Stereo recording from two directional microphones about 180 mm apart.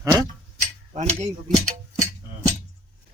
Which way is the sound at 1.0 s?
35° right (ahead or behind).